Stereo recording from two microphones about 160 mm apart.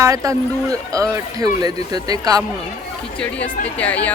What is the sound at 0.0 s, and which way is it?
Speech, 20° right (ahead or behind).